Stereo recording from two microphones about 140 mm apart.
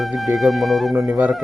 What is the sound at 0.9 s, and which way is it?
Speech, 15° right (ahead or behind).